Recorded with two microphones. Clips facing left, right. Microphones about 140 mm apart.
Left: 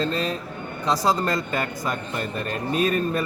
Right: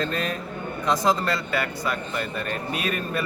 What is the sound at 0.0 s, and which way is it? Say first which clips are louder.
A man's voice: left 2 dB; 30° left (ahead or behind).